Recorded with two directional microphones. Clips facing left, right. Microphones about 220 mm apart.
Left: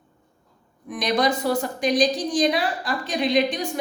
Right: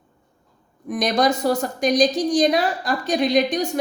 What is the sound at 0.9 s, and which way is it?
A woman's voice, 45° right (ahead or behind).